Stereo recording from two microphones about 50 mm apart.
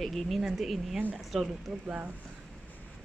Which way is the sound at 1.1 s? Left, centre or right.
Centre.